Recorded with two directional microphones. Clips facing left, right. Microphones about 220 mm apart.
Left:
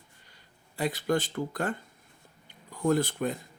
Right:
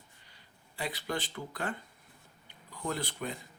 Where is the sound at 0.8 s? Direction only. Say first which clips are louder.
Left 8 dB; 45° left (ahead or behind).